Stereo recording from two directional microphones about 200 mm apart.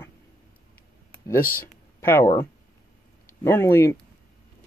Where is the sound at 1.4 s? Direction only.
45° left (ahead or behind).